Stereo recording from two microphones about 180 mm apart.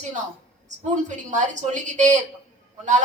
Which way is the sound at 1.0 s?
40° right (ahead or behind).